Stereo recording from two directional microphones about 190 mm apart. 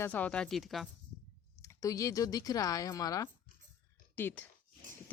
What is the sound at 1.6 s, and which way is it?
Speech, 15° left (ahead or behind).